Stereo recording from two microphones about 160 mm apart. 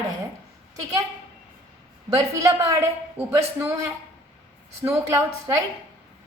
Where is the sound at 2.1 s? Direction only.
20° right (ahead or behind).